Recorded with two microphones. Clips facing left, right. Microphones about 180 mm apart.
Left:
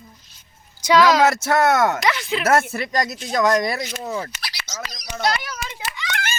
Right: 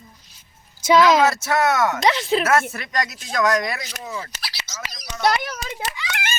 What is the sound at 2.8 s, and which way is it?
Speech, 35° left (ahead or behind).